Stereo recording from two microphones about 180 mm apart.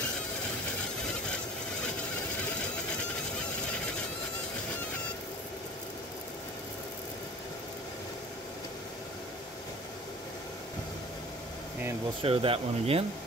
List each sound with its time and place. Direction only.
12.2 s speech: 30° right (ahead or behind)